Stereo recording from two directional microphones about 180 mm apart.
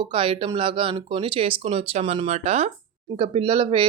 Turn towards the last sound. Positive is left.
turn(degrees=-30)  # may be behind; listen again after turning